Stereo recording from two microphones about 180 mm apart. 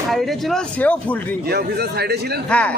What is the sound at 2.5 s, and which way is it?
Speech, 5° left (ahead or behind).